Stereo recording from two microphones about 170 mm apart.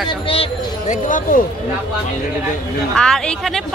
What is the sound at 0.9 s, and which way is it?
Speech, 50° left (ahead or behind).